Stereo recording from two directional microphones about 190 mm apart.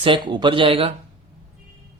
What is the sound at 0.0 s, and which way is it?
Speech, 25° right (ahead or behind).